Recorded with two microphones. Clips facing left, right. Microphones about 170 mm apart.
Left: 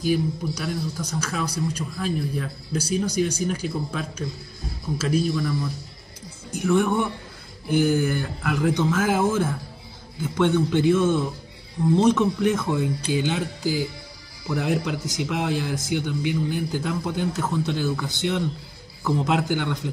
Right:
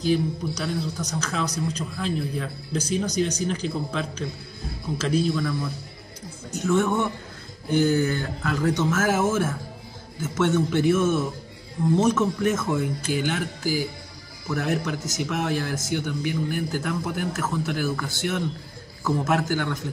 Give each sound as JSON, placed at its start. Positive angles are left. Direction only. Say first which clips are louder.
{"t": 0.0, "sound": "a man's voice", "louder": "even", "side_deg": 5}
{"t": 5.2, "sound": "a man's voice", "louder": "even", "side_deg": 0}
{"t": 6.5, "sound": "a man's voice", "louder": "left 1 dB", "side_deg": 15}